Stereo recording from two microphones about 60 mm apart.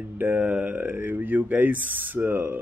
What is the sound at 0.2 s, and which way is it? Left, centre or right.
Speech, right.